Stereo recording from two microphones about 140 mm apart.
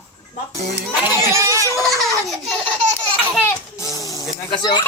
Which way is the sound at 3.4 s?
25° left (ahead or behind).